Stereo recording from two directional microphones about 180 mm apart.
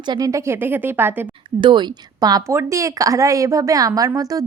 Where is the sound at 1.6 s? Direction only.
25° right (ahead or behind).